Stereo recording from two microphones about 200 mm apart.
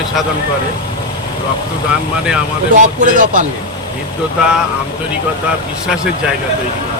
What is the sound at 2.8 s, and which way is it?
Speech, 40° right (ahead or behind).